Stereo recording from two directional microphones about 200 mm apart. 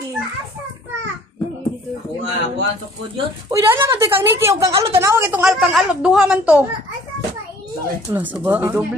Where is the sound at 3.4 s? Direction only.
15° right (ahead or behind).